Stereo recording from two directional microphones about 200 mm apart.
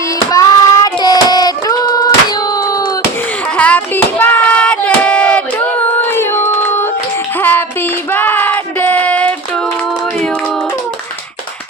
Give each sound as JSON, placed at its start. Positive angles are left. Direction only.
{"t": 0.3, "sound": "child singing", "side_deg": 15}
{"t": 3.6, "sound": "hands", "side_deg": 10}
{"t": 6.1, "sound": "a sound", "side_deg": 10}
{"t": 8.1, "sound": "child singing", "side_deg": 10}